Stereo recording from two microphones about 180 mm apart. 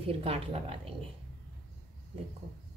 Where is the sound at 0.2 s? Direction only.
30° right (ahead or behind).